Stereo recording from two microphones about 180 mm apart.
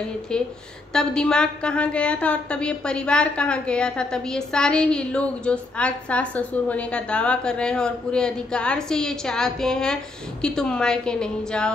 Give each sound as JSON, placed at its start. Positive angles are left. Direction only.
{"t": 0.9, "sound": "a woman's voice", "side_deg": 5}